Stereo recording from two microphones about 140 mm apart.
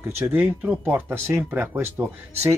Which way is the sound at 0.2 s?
15° right (ahead or behind).